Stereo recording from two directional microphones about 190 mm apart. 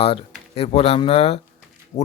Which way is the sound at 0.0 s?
30° left (ahead or behind).